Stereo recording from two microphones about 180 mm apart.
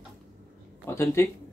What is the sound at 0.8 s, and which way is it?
Speech, 15° left (ahead or behind).